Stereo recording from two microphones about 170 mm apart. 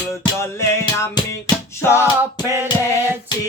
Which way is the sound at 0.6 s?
15° left (ahead or behind).